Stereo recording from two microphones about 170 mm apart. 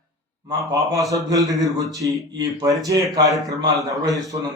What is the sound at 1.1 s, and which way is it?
A man's voice, 20° right (ahead or behind).